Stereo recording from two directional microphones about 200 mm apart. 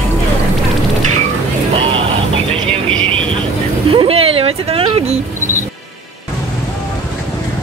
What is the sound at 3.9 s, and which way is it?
Vehicle, 25° right (ahead or behind).